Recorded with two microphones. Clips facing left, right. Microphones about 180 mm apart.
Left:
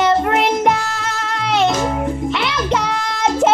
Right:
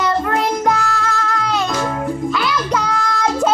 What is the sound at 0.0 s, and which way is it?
Music, 25° left (ahead or behind).